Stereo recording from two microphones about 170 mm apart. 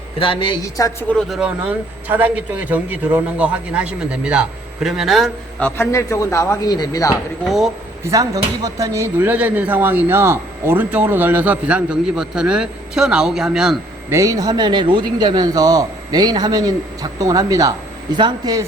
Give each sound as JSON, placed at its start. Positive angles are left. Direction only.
{"t": 0.2, "sound": "a woman's voice", "side_deg": 30}
{"t": 1.1, "sound": "speech", "side_deg": 0}
{"t": 5.6, "sound": "speech", "side_deg": 15}
{"t": 7.4, "sound": "speech", "side_deg": 0}
{"t": 8.0, "sound": "speech", "side_deg": -20}
{"t": 14.1, "sound": "speech", "side_deg": -20}